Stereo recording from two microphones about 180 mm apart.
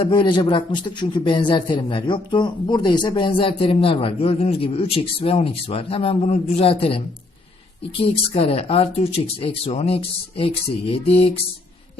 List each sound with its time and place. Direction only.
0.0 s a man's voice: 25° left (ahead or behind)